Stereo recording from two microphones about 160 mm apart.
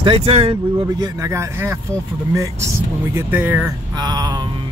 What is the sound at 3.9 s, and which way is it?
Speech, 25° right (ahead or behind).